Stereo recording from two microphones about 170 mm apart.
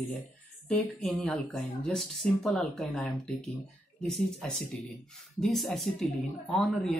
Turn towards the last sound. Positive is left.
turn(degrees=5)  # may be behind; listen again after turning